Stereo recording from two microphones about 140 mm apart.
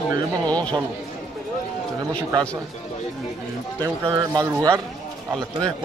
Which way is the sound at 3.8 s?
30° right (ahead or behind).